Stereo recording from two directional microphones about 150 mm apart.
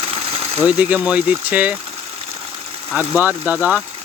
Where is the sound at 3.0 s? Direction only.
10° right (ahead or behind).